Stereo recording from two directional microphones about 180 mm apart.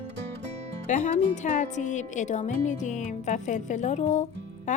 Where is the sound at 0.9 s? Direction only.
40° left (ahead or behind).